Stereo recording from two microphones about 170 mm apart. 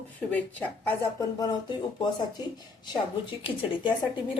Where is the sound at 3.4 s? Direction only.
30° left (ahead or behind).